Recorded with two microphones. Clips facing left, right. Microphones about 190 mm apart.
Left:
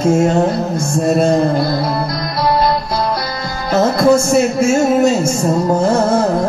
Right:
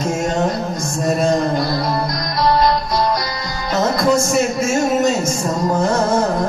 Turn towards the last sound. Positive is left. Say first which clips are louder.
# left 4 dB
turn(degrees=30)  # may be behind; listen again after turning